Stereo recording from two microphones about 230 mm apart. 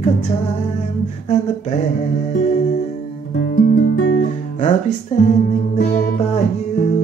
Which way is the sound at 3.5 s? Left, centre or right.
Left.